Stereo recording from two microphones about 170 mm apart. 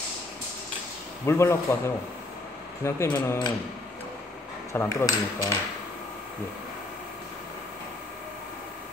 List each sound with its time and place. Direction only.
1.2 s speech: 15° left (ahead or behind)
2.8 s speech: 15° left (ahead or behind)
4.7 s speech: 20° left (ahead or behind)